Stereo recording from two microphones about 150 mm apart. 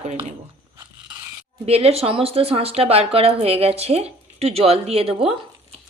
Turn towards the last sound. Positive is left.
turn(degrees=-40)  # may be behind; listen again after turning